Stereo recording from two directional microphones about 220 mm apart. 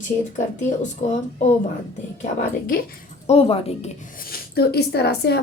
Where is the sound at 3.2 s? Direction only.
25° left (ahead or behind).